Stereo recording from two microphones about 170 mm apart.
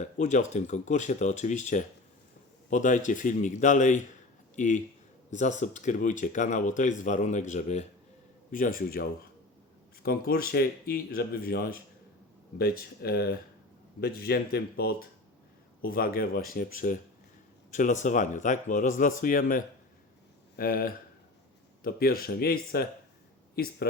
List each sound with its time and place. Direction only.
0.0 s speech: 45° left (ahead or behind); by 24.0 s 65° left (ahead or behind)